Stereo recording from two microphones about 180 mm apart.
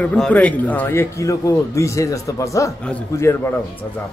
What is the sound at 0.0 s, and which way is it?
A man's voice, 5° left (ahead or behind).